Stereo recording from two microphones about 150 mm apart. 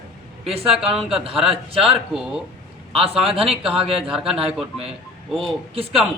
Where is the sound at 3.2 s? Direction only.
40° right (ahead or behind).